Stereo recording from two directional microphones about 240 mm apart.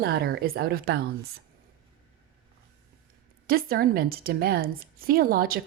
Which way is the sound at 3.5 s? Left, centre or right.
Right.